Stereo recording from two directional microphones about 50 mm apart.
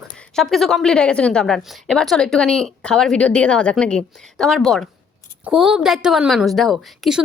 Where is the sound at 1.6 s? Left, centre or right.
Centre.